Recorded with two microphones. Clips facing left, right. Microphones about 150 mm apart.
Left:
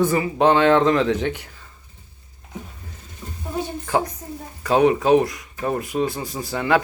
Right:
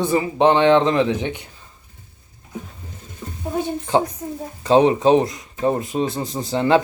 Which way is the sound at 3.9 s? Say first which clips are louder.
Right 3 dB; 20° right (ahead or behind).